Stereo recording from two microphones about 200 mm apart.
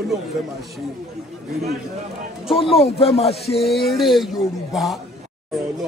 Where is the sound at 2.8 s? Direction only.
30° left (ahead or behind).